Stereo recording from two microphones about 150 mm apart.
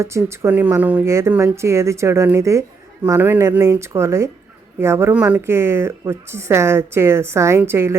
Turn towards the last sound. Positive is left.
turn(degrees=-15)  # may be behind; listen again after turning